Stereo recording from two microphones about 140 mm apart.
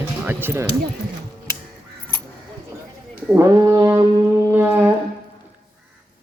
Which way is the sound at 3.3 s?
25° right (ahead or behind).